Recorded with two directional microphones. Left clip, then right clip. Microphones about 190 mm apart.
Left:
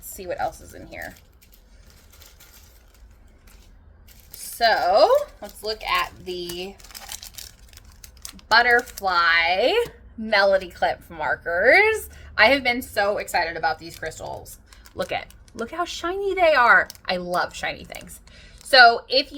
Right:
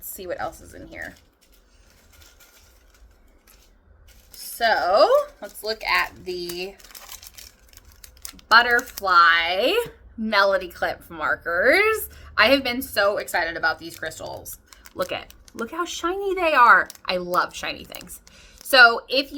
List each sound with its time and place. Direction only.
0.1 s a woman's voice: 15° right (ahead or behind)
4.5 s a woman's voice: 10° right (ahead or behind)
6.7 s a sound: 15° left (ahead or behind)
8.0 s typing: 5° right (ahead or behind)
8.4 s speech: 20° right (ahead or behind)
8.7 s a woman's voice: 5° right (ahead or behind)
9.0 s a woman's voice: 20° right (ahead or behind)